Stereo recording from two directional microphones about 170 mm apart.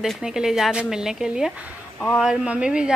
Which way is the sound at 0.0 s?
Centre (ahead or behind).